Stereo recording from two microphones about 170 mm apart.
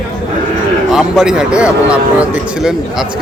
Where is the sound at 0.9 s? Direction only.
Centre (ahead or behind).